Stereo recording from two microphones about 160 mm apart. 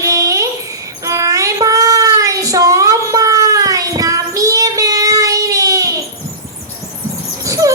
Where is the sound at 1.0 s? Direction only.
20° right (ahead or behind).